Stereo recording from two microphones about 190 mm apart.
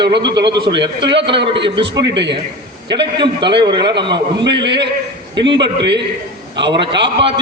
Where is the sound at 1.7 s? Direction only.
25° right (ahead or behind).